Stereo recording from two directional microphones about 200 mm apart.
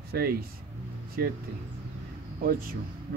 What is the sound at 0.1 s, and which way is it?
Speech, 50° right (ahead or behind).